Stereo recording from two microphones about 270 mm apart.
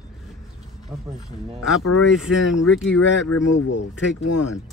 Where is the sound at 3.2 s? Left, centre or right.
Left.